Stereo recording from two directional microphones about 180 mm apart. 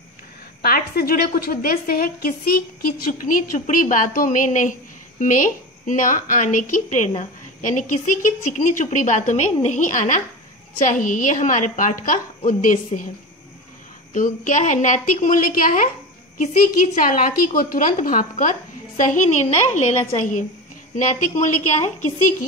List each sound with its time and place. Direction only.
0.6 s a woman's voice: 55° left (ahead or behind)
14.1 s a woman's voice: 45° left (ahead or behind)